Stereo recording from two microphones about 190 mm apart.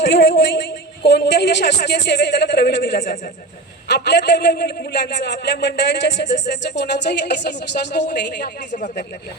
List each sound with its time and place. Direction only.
0.0 s a woman's voice: 70° left (ahead or behind)